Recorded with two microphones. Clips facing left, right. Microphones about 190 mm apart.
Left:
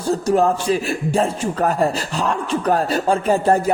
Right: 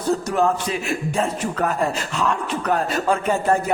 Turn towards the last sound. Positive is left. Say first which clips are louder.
# left 4 dB
turn(degrees=35)  # may be behind; listen again after turning